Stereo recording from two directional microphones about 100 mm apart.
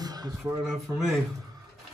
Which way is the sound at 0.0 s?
40° right (ahead or behind).